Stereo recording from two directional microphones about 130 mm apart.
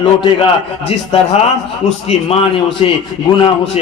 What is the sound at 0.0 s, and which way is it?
Speech, 40° left (ahead or behind).